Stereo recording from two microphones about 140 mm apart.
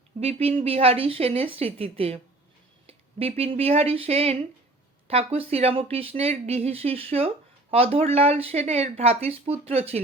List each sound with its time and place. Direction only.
0.2 s speech: 45° right (ahead or behind)